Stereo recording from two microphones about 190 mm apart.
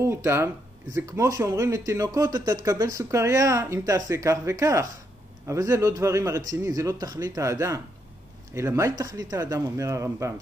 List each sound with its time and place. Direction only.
0.0 s speech: 15° right (ahead or behind)